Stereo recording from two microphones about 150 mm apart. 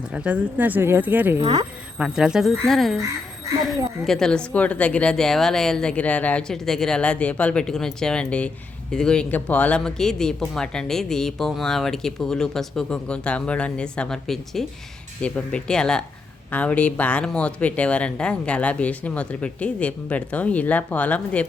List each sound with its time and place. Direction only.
0.1 s speech: 10° right (ahead or behind)
1.4 s speech: 30° right (ahead or behind)
2.0 s speech: 5° right (ahead or behind)
4.0 s speech: 5° left (ahead or behind)